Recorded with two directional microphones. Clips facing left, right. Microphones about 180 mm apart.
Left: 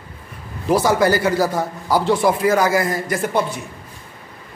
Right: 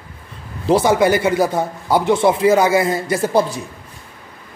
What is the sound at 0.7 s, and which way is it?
A man's voice, 25° right (ahead or behind).